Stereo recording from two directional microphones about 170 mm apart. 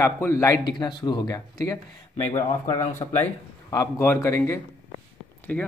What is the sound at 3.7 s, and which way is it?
A man's voice, 15° left (ahead or behind).